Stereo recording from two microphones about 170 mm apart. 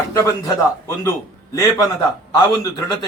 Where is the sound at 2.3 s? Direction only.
20° left (ahead or behind).